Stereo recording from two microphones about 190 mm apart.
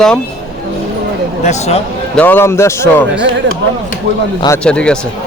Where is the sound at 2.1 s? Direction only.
10° left (ahead or behind).